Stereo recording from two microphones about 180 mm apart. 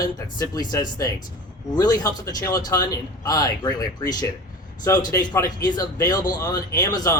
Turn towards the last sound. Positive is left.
turn(degrees=20)  # may be behind; listen again after turning